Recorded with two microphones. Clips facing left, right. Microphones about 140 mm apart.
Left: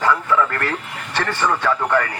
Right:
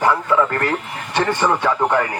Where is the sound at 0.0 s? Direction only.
20° right (ahead or behind).